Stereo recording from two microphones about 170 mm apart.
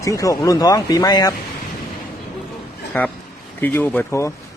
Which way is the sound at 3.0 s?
10° left (ahead or behind).